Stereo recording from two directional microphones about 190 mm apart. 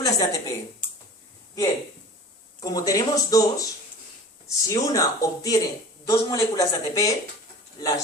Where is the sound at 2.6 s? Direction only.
20° left (ahead or behind).